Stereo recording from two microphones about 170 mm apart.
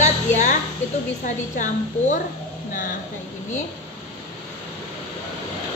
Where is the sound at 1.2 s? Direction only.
45° left (ahead or behind).